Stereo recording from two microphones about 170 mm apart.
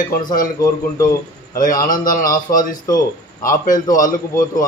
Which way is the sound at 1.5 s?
55° left (ahead or behind).